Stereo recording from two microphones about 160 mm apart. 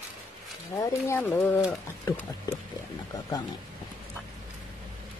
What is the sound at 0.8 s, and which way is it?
Speech, 20° left (ahead or behind).